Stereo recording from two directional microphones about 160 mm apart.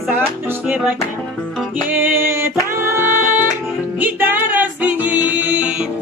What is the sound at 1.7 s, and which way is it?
Music, 10° right (ahead or behind).